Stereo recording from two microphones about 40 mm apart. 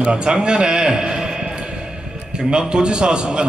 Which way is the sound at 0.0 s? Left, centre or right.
Right.